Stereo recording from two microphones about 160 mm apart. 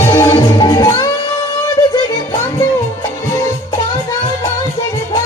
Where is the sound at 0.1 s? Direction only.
20° left (ahead or behind).